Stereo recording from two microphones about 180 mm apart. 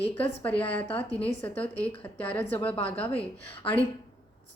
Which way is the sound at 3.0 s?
10° left (ahead or behind).